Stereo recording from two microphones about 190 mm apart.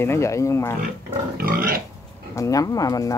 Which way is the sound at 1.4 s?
50° right (ahead or behind).